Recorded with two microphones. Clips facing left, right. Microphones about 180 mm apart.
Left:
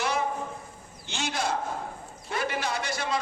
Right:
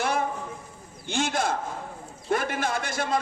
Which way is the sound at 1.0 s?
50° right (ahead or behind).